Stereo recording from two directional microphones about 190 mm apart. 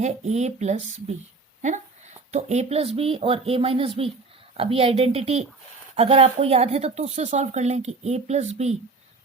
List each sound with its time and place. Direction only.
0.0 s speech: 35° right (ahead or behind)